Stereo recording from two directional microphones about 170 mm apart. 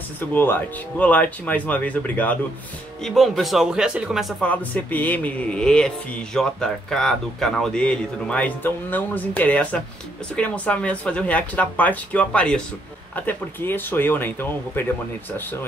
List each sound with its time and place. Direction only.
0.3 s speech: 10° left (ahead or behind)